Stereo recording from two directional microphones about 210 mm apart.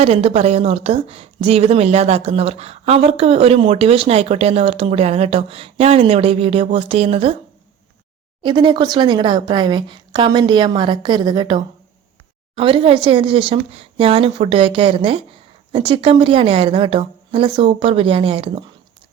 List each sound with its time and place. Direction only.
0.0 s a woman's voice: 30° right (ahead or behind)
8.4 s a woman's voice: 25° right (ahead or behind)